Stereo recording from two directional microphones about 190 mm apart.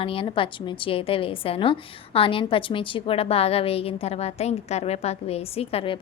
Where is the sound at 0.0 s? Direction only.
30° left (ahead or behind).